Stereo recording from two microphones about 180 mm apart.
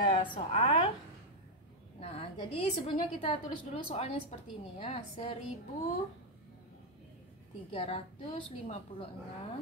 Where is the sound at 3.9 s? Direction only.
35° left (ahead or behind).